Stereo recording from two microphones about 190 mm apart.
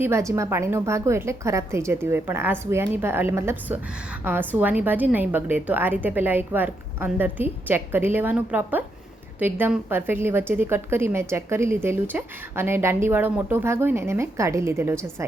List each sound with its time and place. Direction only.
0.0 s a woman's voice: 15° right (ahead or behind)